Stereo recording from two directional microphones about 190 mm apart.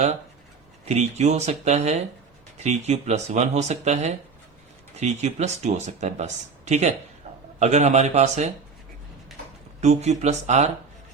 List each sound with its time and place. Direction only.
0.9 s speech: 35° right (ahead or behind)
7.3 s a sound: 30° right (ahead or behind)
7.6 s speech: 35° right (ahead or behind)
9.8 s speech: 35° right (ahead or behind)